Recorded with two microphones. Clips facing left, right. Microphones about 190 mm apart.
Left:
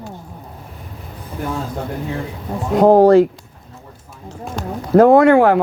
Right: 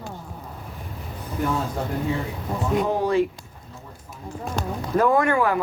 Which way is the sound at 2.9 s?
85° left.